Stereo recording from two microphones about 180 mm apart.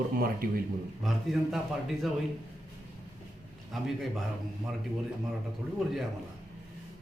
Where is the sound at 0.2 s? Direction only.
55° right (ahead or behind).